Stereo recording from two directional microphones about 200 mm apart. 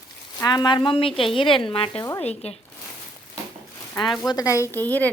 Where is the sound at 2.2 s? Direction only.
30° left (ahead or behind).